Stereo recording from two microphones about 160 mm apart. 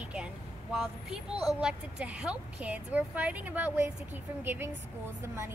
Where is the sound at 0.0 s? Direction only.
5° right (ahead or behind).